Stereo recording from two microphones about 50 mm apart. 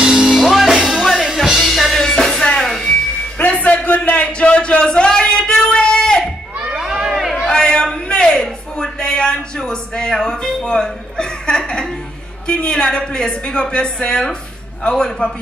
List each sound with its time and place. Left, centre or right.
0.0 s music: centre
0.4 s music: centre
3.3 s a sound: left
6.6 s crowd: centre
7.4 s a sound: centre
12.4 s a woman's voice: centre